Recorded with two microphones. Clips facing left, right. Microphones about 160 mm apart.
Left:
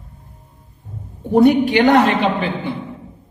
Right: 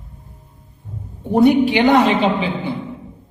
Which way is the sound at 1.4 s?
50° left (ahead or behind).